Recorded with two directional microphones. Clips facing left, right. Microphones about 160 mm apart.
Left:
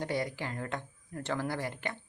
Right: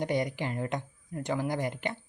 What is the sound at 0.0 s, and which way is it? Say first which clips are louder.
Speech: right 4 dB; 20° right (ahead or behind).